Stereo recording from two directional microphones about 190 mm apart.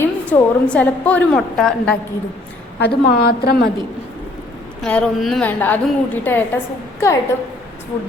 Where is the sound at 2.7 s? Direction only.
60° left (ahead or behind).